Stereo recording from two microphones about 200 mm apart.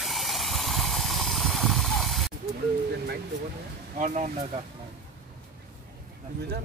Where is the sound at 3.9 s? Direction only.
35° right (ahead or behind).